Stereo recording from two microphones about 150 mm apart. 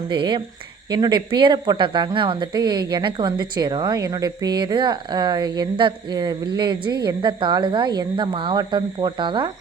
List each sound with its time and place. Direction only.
0.1 s speech: 35° right (ahead or behind)